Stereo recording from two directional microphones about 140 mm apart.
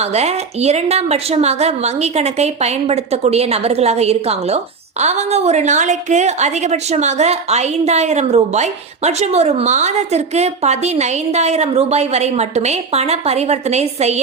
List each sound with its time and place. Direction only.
0.0 s a woman's voice: 50° right (ahead or behind)